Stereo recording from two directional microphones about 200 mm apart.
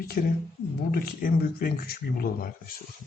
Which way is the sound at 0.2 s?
45° left (ahead or behind).